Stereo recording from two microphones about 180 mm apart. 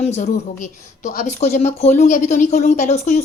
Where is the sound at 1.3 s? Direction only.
40° left (ahead or behind).